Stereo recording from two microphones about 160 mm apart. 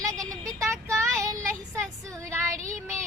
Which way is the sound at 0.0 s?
20° right (ahead or behind).